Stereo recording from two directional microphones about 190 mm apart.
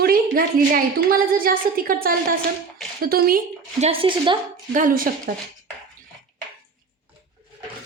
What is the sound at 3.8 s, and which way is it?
Speech, 30° right (ahead or behind).